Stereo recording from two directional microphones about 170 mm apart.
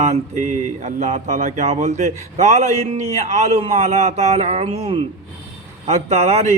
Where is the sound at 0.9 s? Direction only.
45° right (ahead or behind).